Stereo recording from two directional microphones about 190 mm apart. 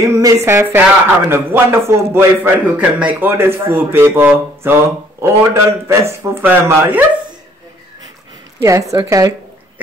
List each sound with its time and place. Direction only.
0.1 s a man's voice: 15° right (ahead or behind)
8.6 s a man's voice: 15° right (ahead or behind)